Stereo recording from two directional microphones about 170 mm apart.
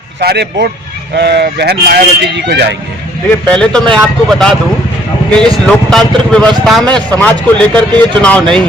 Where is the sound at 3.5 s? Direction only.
5° left (ahead or behind).